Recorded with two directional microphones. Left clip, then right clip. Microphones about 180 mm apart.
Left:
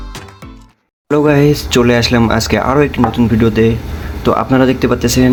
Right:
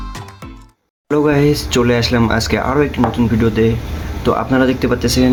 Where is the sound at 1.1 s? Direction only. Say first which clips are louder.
Left 3 dB; 20° left (ahead or behind).